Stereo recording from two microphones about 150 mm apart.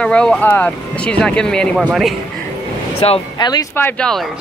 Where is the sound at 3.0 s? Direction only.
40° left (ahead or behind).